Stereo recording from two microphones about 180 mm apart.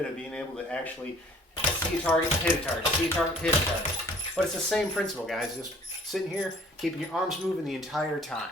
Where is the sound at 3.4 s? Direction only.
5° left (ahead or behind).